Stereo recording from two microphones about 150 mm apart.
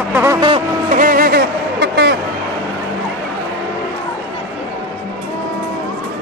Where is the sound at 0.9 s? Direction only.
65° right (ahead or behind); by 1.4 s 80° right.